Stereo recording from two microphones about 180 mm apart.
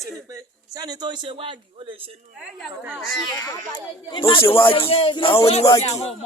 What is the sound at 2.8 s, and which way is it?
Speech, 10° right (ahead or behind).